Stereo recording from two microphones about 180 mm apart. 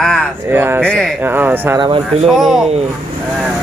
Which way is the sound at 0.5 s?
10° right (ahead or behind).